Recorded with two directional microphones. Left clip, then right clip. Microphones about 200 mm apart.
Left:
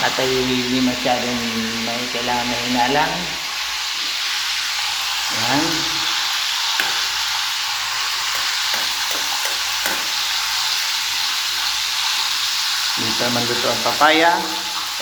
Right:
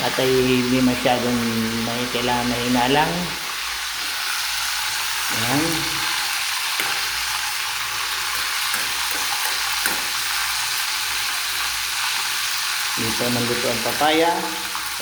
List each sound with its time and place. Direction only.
14.0 s frying: 20° right (ahead or behind)